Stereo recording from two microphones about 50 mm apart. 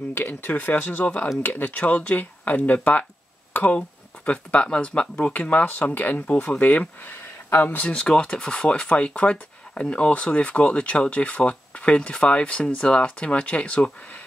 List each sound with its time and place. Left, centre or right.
0.1 s speech: left
7.9 s speech: left